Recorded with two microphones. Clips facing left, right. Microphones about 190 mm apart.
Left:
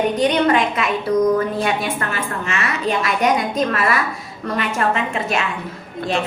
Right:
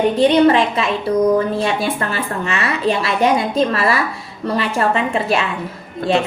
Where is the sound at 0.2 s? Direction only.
30° right (ahead or behind).